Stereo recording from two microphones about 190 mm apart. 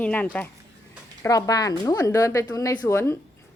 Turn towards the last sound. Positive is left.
turn(degrees=15)  # may be behind; listen again after turning